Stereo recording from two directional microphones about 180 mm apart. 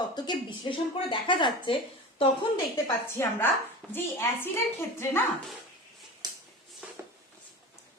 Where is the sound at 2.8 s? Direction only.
15° left (ahead or behind).